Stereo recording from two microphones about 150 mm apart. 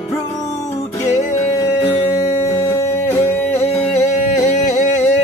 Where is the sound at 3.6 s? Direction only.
50° left (ahead or behind).